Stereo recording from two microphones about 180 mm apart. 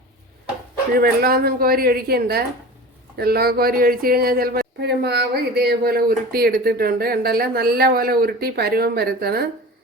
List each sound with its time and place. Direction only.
0.9 s speech: 55° right (ahead or behind)